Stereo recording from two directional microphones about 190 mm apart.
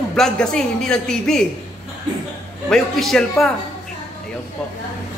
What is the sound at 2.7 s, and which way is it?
Speech, centre (ahead or behind).